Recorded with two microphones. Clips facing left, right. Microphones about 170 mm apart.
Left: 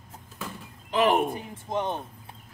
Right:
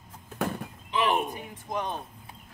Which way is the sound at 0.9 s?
45° left (ahead or behind).